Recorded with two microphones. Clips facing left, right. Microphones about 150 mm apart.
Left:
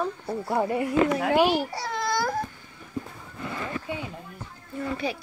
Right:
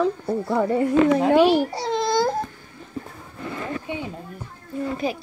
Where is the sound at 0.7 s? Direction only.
30° right (ahead or behind).